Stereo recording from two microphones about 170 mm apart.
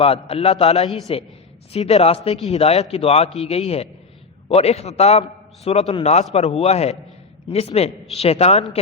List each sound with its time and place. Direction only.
0.0 s a man's voice: 35° left (ahead or behind)
3.2 s a man's voice: centre (ahead or behind)
3.5 s a man's voice: 35° left (ahead or behind)